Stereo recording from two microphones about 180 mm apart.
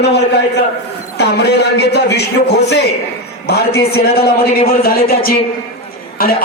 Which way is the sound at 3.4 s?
65° left (ahead or behind).